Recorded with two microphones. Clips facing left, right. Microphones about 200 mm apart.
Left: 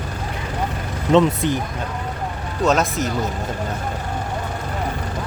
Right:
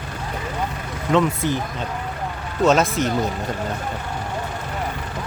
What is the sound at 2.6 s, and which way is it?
Speech, centre (ahead or behind).